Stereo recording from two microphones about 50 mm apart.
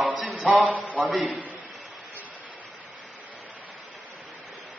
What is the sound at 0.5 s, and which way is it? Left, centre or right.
Speech, right.